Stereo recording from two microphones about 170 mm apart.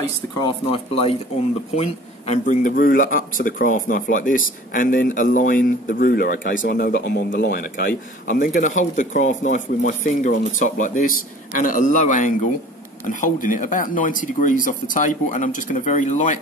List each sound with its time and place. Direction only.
0.4 s speech: 35° left (ahead or behind)